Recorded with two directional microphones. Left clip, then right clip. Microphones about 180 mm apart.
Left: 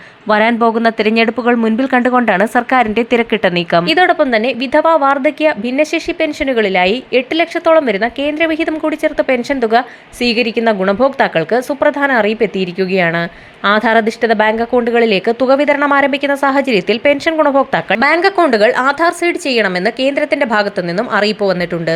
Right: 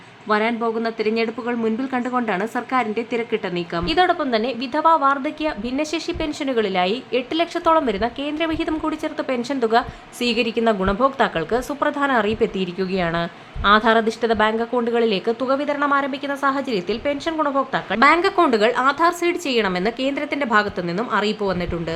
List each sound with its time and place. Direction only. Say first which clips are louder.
0.3 s a woman's voice: left 9 dB; 30° left (ahead or behind); by 21.9 s 15° left (ahead or behind)